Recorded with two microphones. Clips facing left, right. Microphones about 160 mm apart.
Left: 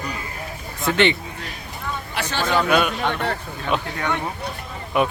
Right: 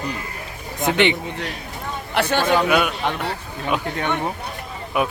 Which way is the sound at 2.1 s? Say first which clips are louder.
Right 8 dB; 55° right (ahead or behind).